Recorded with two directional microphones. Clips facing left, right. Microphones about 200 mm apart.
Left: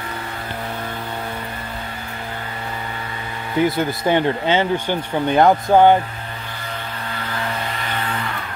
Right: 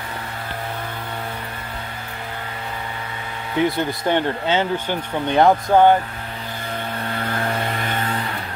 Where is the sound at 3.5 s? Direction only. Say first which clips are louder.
Left 2 dB; centre (ahead or behind).